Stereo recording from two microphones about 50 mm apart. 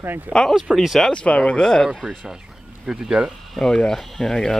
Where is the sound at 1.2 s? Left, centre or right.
Left.